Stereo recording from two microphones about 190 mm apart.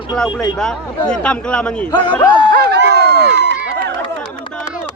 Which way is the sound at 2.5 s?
60° right (ahead or behind).